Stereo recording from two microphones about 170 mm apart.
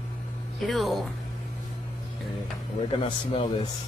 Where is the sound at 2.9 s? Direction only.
30° left (ahead or behind).